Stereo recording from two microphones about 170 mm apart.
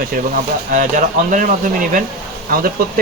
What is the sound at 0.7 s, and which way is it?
Speech, 50° right (ahead or behind).